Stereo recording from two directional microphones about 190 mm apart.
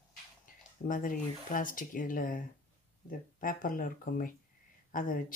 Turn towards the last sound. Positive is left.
turn(degrees=45)  # may be behind; listen again after turning